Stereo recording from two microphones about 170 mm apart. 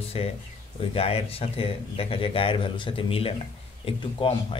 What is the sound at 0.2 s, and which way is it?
Speech, 35° left (ahead or behind).